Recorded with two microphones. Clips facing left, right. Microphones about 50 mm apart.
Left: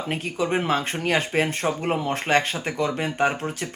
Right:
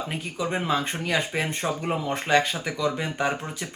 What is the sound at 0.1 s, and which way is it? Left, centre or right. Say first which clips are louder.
Speech: left 8 dB; left.